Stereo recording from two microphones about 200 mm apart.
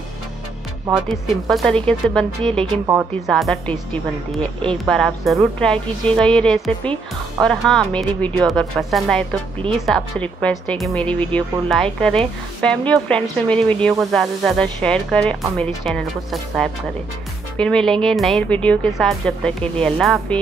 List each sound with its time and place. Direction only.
1.0 s a woman's voice: centre (ahead or behind)